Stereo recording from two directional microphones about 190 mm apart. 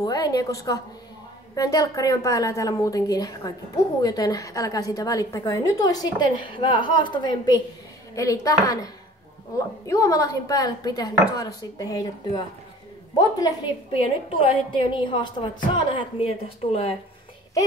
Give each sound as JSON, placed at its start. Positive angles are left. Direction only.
{"t": 0.0, "sound": "a woman's voice", "side_deg": 20}
{"t": 13.2, "sound": "a woman's voice", "side_deg": 20}